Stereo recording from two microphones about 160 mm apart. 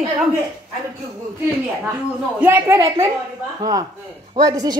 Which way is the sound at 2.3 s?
10° right (ahead or behind).